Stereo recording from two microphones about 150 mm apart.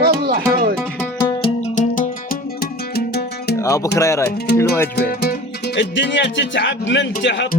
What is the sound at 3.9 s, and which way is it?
Music, 20° left (ahead or behind).